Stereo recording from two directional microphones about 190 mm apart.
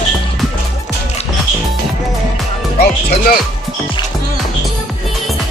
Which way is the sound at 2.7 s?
55° left (ahead or behind).